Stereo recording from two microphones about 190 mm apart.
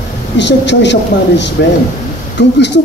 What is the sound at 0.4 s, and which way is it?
Speech, 65° left (ahead or behind).